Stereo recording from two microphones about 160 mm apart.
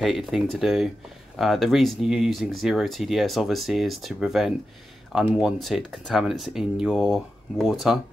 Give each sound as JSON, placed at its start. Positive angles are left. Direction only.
{"t": 0.0, "sound": "speech", "side_deg": 0}